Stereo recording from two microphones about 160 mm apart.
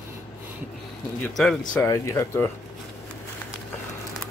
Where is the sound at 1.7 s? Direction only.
15° left (ahead or behind).